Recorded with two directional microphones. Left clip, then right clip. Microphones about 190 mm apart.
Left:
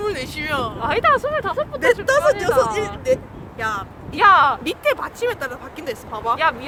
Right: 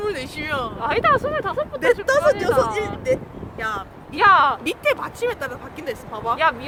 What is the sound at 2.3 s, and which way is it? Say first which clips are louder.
Speech: left 1 dB; 25° left (ahead or behind).